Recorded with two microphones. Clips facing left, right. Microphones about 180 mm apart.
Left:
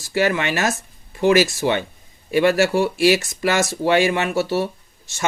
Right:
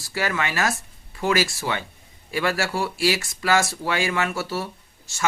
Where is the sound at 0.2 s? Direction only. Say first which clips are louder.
Left 5 dB; 20° left (ahead or behind).